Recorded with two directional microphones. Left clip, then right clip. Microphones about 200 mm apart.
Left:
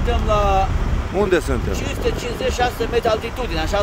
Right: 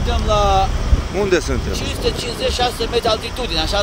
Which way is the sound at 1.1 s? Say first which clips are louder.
Right 1 dB; 10° left (ahead or behind).